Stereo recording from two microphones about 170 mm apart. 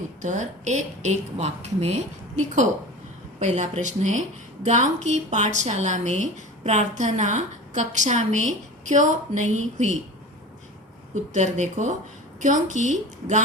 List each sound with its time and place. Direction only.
0.2 s a woman's voice: 45° right (ahead or behind)
11.1 s a woman's voice: 45° right (ahead or behind)